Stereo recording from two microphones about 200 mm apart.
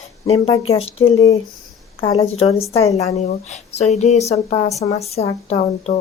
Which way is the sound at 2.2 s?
30° left (ahead or behind).